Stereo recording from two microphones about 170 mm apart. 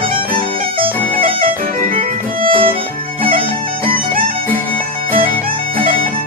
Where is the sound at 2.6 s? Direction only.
30° right (ahead or behind).